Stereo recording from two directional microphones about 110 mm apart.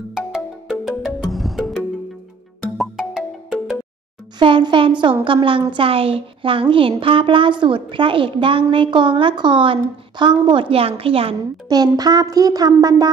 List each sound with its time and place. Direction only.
0.1 s music: 5° right (ahead or behind)
4.4 s a woman's voice: 45° right (ahead or behind); by 11.3 s 60° right (ahead or behind)
11.7 s a woman's voice: 40° right (ahead or behind)